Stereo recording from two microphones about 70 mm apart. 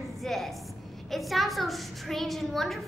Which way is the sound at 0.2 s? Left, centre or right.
Centre.